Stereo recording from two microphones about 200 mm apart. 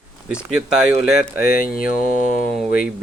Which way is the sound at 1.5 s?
45° left (ahead or behind).